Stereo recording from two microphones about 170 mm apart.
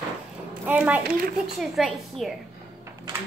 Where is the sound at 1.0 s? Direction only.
60° right (ahead or behind).